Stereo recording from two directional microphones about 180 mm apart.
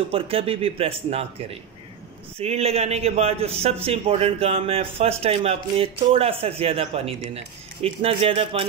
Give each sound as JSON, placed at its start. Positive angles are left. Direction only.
{"t": 0.1, "sound": "a man's voice", "side_deg": -30}